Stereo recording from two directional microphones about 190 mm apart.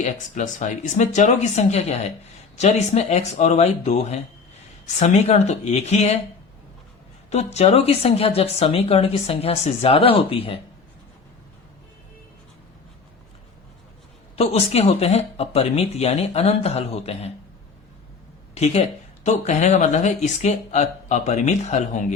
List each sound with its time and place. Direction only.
0.0 s speech: 40° left (ahead or behind)
7.3 s speech: 35° left (ahead or behind)
14.3 s speech: 35° left (ahead or behind)
18.5 s speech: 35° left (ahead or behind)